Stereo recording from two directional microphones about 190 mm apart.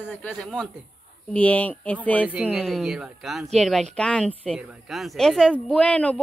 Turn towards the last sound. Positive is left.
turn(degrees=5)  # may be behind; listen again after turning